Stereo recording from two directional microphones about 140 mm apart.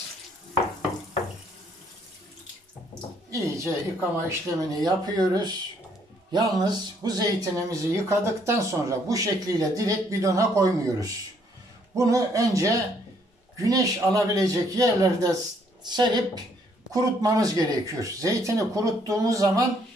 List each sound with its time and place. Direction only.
3.3 s speech: 20° right (ahead or behind)